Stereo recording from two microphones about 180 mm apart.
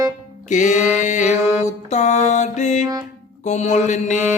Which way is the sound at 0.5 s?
40° left (ahead or behind).